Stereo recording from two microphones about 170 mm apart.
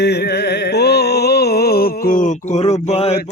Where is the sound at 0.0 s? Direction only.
75° left (ahead or behind).